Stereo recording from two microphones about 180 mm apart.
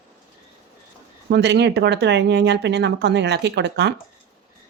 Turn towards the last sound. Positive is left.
turn(degrees=-70)  # may be behind; listen again after turning